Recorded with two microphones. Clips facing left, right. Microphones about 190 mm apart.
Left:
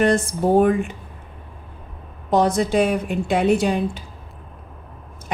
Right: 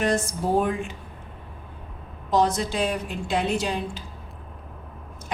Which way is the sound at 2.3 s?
55° left (ahead or behind).